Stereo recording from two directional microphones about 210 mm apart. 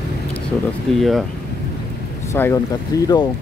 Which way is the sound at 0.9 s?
Centre (ahead or behind).